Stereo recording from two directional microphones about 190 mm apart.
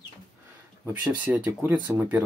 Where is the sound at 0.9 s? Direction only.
10° right (ahead or behind).